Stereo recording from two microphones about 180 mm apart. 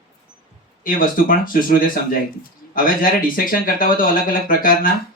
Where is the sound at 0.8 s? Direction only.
50° left (ahead or behind).